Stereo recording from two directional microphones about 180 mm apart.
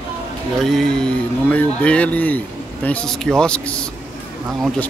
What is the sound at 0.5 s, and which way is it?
Speech, centre (ahead or behind).